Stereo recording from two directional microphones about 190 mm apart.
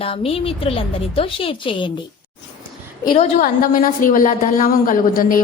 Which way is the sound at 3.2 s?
40° left (ahead or behind).